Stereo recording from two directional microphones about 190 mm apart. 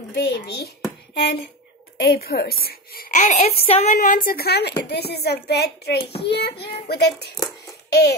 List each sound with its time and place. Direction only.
0.1 s a woman's voice: 60° left (ahead or behind)